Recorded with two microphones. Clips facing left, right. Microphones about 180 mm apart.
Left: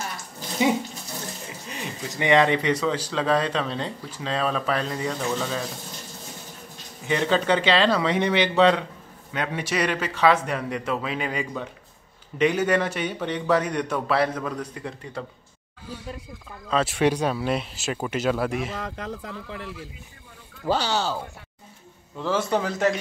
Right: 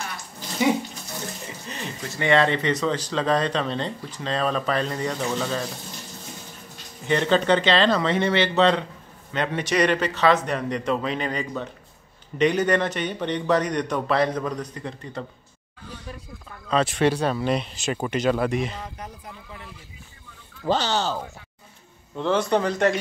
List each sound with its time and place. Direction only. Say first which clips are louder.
1.5 s speech: even; 10° left (ahead or behind)
7.1 s speech: right 2 dB; 5° left (ahead or behind)
16.1 s speech: left 2 dB; 25° left (ahead or behind)
16.6 s speech: right 1 dB; 5° left (ahead or behind)
18.8 s speech: left 5 dB; 90° left
20.6 s speech: right 1 dB; 10° left (ahead or behind)
22.2 s speech: right 3 dB; 5° left (ahead or behind)